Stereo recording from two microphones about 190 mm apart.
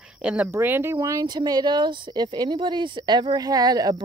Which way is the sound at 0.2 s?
5° right (ahead or behind).